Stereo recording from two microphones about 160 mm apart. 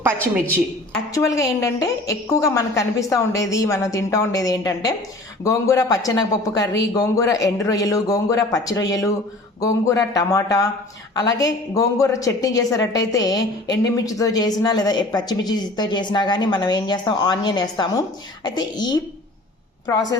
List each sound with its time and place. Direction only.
1.1 s a woman's voice: 20° left (ahead or behind)